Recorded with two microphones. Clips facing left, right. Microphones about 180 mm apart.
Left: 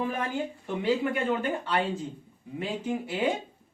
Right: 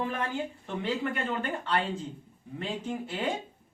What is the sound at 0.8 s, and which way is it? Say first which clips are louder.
Speech: left 4 dB; 10° left (ahead or behind).